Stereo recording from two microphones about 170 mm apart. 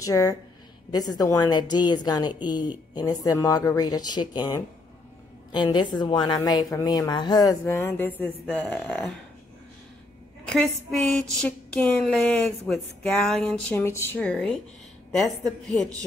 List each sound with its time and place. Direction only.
0.0 s speech: 20° left (ahead or behind)
7.6 s speech: 15° left (ahead or behind)
10.4 s speech: 5° left (ahead or behind)